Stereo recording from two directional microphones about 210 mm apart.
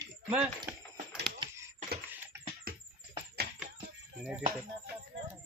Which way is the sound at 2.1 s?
10° right (ahead or behind).